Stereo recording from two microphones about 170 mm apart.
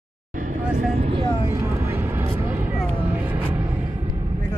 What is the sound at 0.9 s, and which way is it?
Speech, 35° right (ahead or behind).